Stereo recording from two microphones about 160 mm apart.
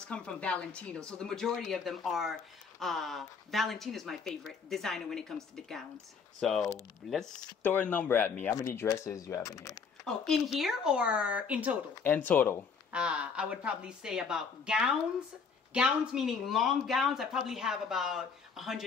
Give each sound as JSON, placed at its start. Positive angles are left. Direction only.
{"t": 0.1, "sound": "speech", "side_deg": 5}
{"t": 6.4, "sound": "speech", "side_deg": 0}
{"t": 10.0, "sound": "speech", "side_deg": 5}
{"t": 12.0, "sound": "speech", "side_deg": 10}
{"t": 12.9, "sound": "speech", "side_deg": -5}